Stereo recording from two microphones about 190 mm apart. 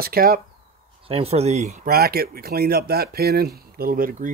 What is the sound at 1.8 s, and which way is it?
Speech, 55° right (ahead or behind).